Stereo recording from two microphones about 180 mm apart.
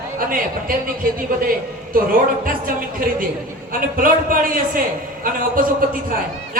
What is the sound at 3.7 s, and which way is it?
A man's voice, 50° right (ahead or behind).